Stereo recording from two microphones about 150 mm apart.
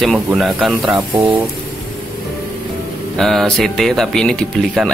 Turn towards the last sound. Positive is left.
turn(degrees=5)  # may be behind; listen again after turning